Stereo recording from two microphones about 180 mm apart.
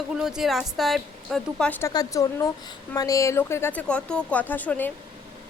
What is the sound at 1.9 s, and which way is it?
Speech, 20° left (ahead or behind).